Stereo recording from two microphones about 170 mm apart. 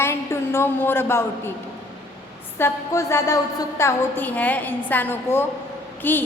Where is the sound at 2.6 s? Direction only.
15° left (ahead or behind).